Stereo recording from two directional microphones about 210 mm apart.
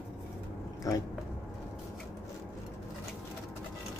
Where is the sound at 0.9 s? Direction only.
15° left (ahead or behind).